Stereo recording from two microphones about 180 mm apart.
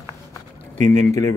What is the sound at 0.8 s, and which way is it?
Speech, 40° right (ahead or behind).